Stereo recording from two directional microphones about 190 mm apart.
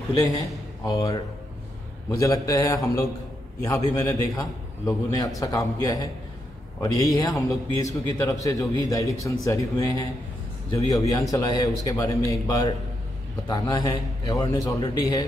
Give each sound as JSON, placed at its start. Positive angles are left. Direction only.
{"t": 0.8, "sound": "a man's voice", "side_deg": 20}